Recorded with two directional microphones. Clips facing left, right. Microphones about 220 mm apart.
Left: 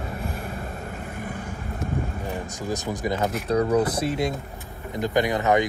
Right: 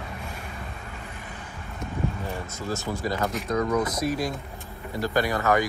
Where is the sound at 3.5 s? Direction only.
30° left (ahead or behind).